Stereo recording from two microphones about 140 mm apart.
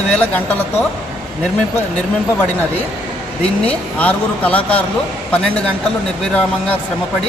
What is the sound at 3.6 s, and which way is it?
A man's voice, 10° left (ahead or behind).